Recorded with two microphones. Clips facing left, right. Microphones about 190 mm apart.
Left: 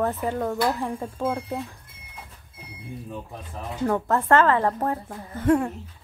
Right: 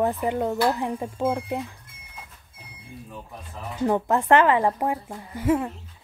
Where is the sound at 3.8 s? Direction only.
15° right (ahead or behind).